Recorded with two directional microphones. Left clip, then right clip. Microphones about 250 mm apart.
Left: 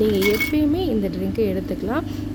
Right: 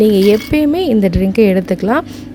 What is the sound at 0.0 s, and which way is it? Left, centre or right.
A woman's voice, right.